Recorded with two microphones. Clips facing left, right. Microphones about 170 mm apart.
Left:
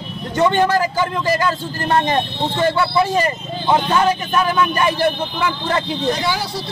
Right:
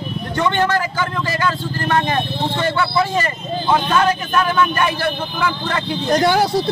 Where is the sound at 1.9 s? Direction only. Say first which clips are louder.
Left 2 dB; 20° left (ahead or behind).